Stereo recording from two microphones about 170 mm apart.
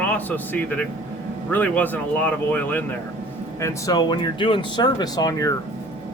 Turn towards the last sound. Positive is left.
turn(degrees=20)  # may be behind; listen again after turning